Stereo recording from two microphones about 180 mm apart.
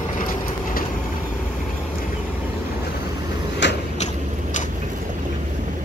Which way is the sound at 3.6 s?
80° left.